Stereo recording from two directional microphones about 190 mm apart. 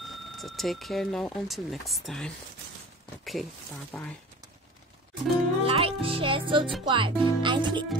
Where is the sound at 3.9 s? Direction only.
5° left (ahead or behind).